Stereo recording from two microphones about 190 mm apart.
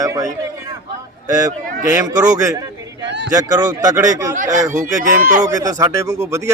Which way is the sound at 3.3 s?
20° right (ahead or behind).